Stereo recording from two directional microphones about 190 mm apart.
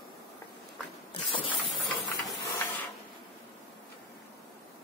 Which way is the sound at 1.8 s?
Centre (ahead or behind).